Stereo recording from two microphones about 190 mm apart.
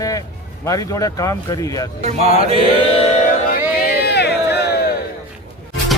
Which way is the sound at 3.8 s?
60° left (ahead or behind).